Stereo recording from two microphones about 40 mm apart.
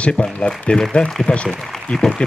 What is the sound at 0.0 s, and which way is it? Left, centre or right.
Speech, left.